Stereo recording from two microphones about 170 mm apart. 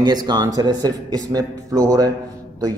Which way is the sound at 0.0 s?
25° right (ahead or behind).